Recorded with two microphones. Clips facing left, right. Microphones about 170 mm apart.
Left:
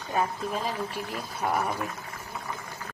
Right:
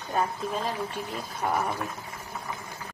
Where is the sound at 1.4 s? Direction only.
5° left (ahead or behind).